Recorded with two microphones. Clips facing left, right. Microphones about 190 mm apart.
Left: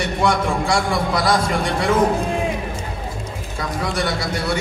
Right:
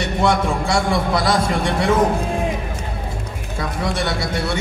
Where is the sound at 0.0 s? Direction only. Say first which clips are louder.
Right 1 dB; 25° right (ahead or behind).